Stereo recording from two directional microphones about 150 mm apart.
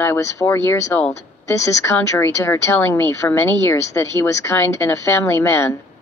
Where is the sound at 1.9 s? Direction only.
15° left (ahead or behind).